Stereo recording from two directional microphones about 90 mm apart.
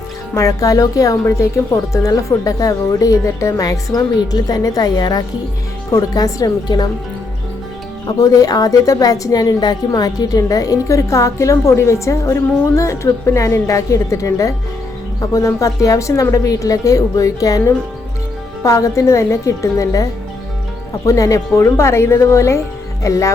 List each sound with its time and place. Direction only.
0.3 s a woman's voice: 40° left (ahead or behind)
8.0 s a woman's voice: 45° left (ahead or behind)